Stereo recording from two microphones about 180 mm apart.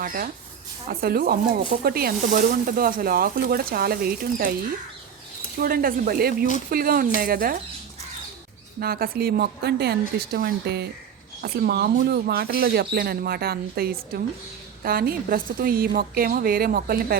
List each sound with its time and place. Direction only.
0.0 s speech: 50° right (ahead or behind)
5.5 s speech: 55° right (ahead or behind)
8.8 s speech: 55° right (ahead or behind)